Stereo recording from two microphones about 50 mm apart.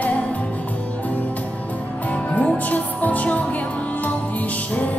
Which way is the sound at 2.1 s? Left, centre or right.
Left.